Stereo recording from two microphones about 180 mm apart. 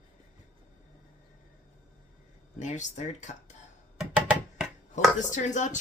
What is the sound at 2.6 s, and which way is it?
Speech, 40° left (ahead or behind).